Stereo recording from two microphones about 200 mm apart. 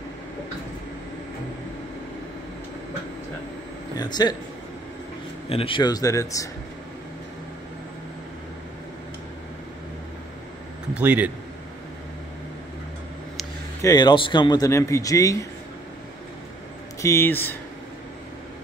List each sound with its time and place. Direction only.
3.9 s speech: 20° left (ahead or behind)
5.5 s speech: 25° left (ahead or behind)
11.0 s a man's voice: 5° right (ahead or behind)
13.8 s speech: 20° left (ahead or behind)
17.0 s speech: 10° left (ahead or behind)